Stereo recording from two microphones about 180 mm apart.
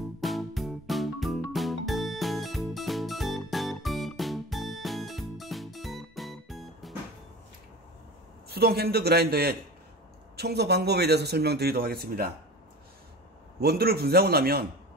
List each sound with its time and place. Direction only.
0.2 s music: centre (ahead or behind)
8.5 s speech: 60° right (ahead or behind)
13.6 s speech: 60° right (ahead or behind)